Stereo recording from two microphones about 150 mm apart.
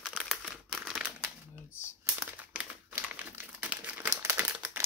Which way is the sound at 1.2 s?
15° right (ahead or behind).